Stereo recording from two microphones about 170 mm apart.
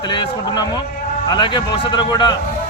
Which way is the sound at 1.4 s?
25° left (ahead or behind).